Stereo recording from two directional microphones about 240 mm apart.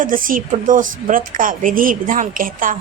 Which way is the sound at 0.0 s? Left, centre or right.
Right.